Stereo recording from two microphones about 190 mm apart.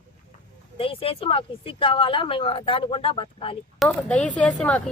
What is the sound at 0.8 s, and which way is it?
Speech, 30° left (ahead or behind).